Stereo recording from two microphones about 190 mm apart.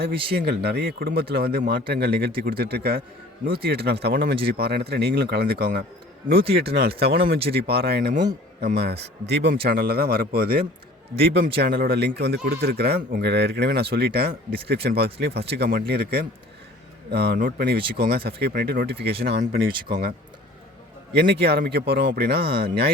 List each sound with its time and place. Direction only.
0.0 s speech: 55° right (ahead or behind)